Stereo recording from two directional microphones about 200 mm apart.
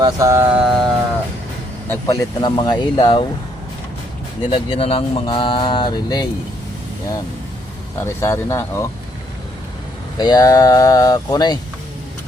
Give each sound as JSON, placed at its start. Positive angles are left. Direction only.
{"t": 0.0, "sound": "mantra", "side_deg": -15}
{"t": 1.9, "sound": "speech", "side_deg": 20}
{"t": 4.5, "sound": "speech", "side_deg": 30}
{"t": 8.0, "sound": "speech", "side_deg": 15}
{"t": 10.2, "sound": "speech", "side_deg": 20}